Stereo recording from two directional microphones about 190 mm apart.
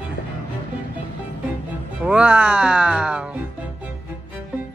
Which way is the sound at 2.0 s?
5° right (ahead or behind).